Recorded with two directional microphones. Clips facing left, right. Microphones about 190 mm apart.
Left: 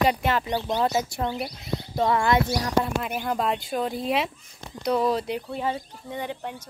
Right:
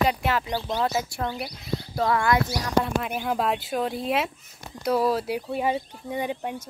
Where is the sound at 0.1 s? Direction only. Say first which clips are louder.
Left 1 dB; 5° right (ahead or behind).